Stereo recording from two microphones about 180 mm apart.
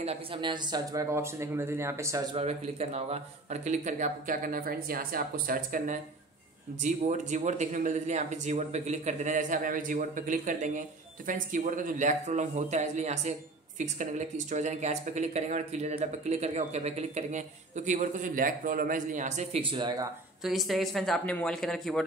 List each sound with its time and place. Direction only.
0.0 s speech: 30° right (ahead or behind); by 2.2 s 15° right (ahead or behind)
2.3 s speech: 35° right (ahead or behind)
20.4 s speech: centre (ahead or behind)